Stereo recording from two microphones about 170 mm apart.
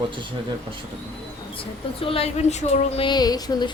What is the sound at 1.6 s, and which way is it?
Speech, 30° left (ahead or behind).